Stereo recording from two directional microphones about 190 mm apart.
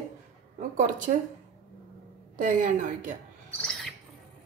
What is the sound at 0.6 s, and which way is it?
Speech, 45° right (ahead or behind).